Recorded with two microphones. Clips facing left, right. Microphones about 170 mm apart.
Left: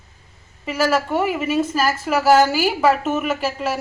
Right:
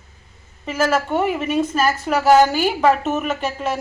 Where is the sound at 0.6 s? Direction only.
Centre (ahead or behind).